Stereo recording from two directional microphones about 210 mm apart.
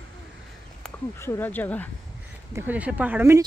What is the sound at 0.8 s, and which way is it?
Speech, 10° left (ahead or behind).